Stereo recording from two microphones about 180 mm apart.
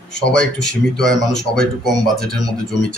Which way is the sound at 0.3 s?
5° left (ahead or behind).